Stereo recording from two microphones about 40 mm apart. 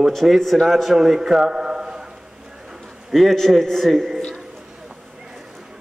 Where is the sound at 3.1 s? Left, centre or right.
Centre.